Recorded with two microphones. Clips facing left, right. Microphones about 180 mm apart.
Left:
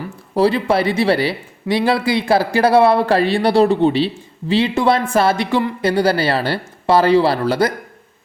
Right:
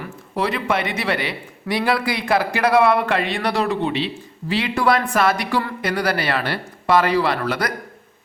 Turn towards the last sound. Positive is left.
turn(degrees=30)  # may be behind; listen again after turning